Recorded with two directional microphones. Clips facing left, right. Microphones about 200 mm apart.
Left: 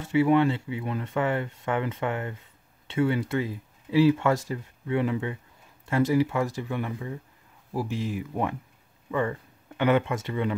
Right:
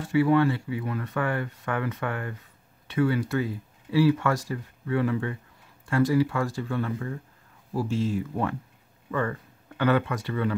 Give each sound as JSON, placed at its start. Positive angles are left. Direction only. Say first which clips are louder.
{"t": 0.0, "sound": "speech", "louder": "even", "side_deg": 20}